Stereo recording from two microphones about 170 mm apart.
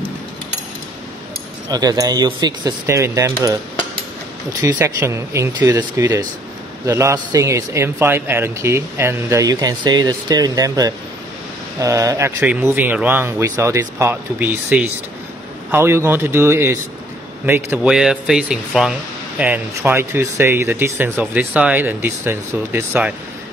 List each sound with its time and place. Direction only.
1.7 s speech: 20° right (ahead or behind)
4.7 s speech: 15° right (ahead or behind)